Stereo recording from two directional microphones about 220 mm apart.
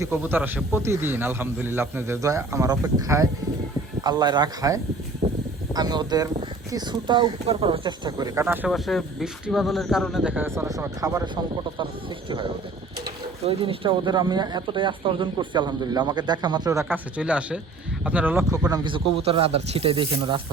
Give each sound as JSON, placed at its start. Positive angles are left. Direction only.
{"t": 0.0, "sound": "speech", "side_deg": -10}
{"t": 5.2, "sound": "a sound", "side_deg": -25}
{"t": 5.7, "sound": "speech", "side_deg": -20}
{"t": 13.4, "sound": "speech", "side_deg": -25}